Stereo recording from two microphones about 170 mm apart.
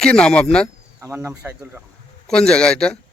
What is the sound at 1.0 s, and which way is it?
Speech, 15° right (ahead or behind).